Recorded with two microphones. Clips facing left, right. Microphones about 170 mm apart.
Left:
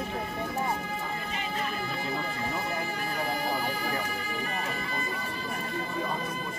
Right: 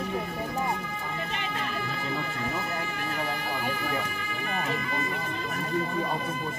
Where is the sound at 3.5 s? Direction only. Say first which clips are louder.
Even; 40° left (ahead or behind).